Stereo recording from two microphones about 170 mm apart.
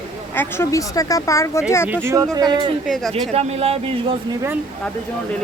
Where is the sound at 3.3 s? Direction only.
35° right (ahead or behind).